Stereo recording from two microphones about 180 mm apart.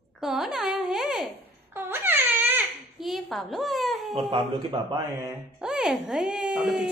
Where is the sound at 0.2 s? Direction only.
Centre (ahead or behind).